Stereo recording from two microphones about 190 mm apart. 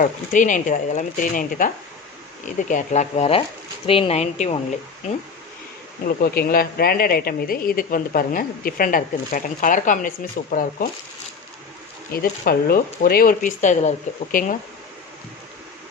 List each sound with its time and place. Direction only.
0.0 s speech: 45° left (ahead or behind)
6.1 s speech: 50° left (ahead or behind)
12.1 s speech: 50° left (ahead or behind)